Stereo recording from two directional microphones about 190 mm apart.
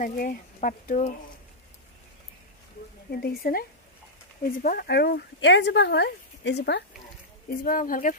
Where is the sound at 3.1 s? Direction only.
55° left (ahead or behind).